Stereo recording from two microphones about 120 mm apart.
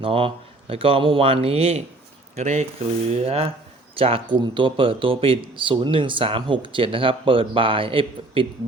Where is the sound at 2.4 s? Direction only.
70° right (ahead or behind).